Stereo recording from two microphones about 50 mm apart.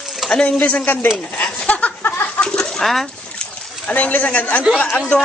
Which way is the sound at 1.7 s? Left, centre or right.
Left.